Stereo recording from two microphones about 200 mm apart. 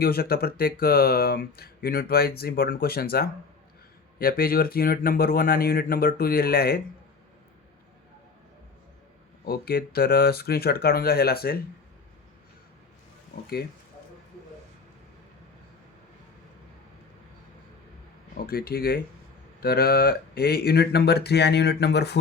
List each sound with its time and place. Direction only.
0.0 s speech: 50° left (ahead or behind)
9.5 s speech: 50° left (ahead or behind)
18.4 s speech: 50° left (ahead or behind)